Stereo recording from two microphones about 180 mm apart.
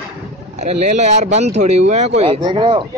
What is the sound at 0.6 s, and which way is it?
Speech, 40° right (ahead or behind).